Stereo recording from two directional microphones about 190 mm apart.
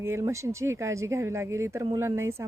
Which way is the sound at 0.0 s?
15° right (ahead or behind).